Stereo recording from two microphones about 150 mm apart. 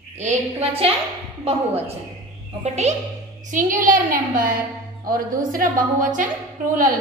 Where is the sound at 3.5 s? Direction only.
60° right (ahead or behind).